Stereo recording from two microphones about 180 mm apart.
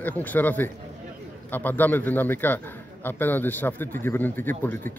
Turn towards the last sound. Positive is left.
turn(degrees=10)  # may be behind; listen again after turning